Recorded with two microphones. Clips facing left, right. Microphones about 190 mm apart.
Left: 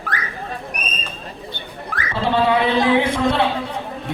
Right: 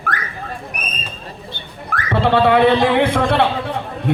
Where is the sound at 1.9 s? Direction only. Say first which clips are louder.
Right 4 dB; 60° right (ahead or behind).